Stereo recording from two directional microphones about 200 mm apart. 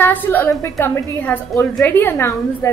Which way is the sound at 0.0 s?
10° left (ahead or behind).